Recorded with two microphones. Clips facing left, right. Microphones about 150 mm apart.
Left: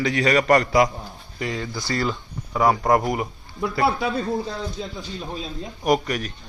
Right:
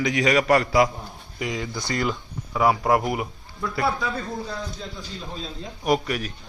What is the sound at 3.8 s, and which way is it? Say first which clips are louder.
Speech: left 4 dB; 25° left (ahead or behind).